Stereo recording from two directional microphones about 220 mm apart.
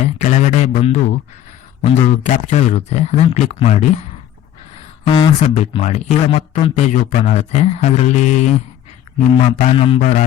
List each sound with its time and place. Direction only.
0.0 s speech: 30° left (ahead or behind)
5.0 s speech: 25° left (ahead or behind)